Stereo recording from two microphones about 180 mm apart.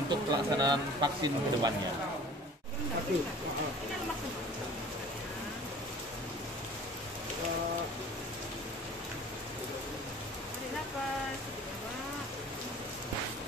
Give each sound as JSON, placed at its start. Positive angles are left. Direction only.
{"t": 0.1, "sound": "speech", "side_deg": -25}